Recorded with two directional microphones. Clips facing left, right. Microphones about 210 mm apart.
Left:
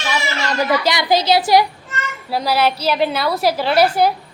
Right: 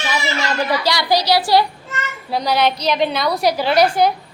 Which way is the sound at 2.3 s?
5° left (ahead or behind).